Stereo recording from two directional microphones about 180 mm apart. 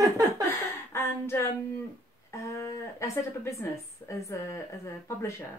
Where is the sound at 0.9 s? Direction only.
15° left (ahead or behind).